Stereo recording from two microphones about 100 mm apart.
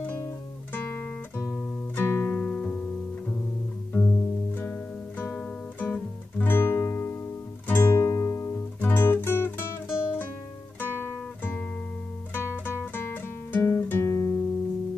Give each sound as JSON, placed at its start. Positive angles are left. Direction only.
{"t": 0.7, "sound": "guitar", "side_deg": 20}
{"t": 2.3, "sound": "music", "side_deg": 10}
{"t": 3.9, "sound": "music", "side_deg": 20}
{"t": 5.8, "sound": "guitar", "side_deg": 15}
{"t": 7.6, "sound": "music", "side_deg": 20}
{"t": 10.8, "sound": "guitar", "side_deg": 20}
{"t": 12.4, "sound": "music", "side_deg": 20}
{"t": 14.0, "sound": "music", "side_deg": 35}